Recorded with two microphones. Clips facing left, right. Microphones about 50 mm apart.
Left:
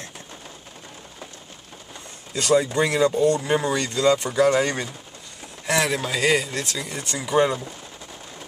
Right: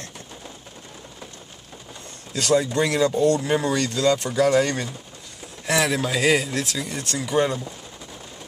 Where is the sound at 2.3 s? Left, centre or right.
Centre.